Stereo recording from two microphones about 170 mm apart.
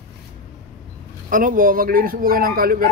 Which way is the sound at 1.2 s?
55° right (ahead or behind).